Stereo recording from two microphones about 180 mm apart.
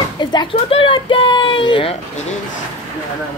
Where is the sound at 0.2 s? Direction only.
25° left (ahead or behind).